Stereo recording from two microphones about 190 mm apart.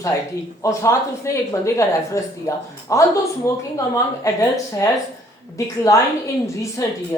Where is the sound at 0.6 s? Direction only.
15° left (ahead or behind).